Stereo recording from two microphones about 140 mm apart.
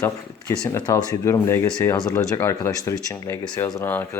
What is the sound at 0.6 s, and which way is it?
Speech, 30° left (ahead or behind).